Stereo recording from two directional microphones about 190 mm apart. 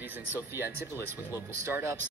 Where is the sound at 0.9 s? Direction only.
15° left (ahead or behind).